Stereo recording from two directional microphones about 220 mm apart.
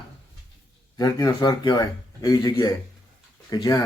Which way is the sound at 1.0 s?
15° left (ahead or behind).